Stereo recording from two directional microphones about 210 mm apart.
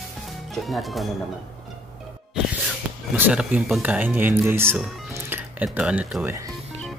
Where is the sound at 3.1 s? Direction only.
5° right (ahead or behind).